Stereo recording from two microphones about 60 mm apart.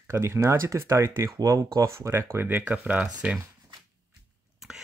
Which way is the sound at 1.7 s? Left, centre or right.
Right.